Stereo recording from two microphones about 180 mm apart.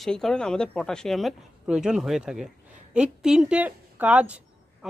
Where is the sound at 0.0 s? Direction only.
Centre (ahead or behind).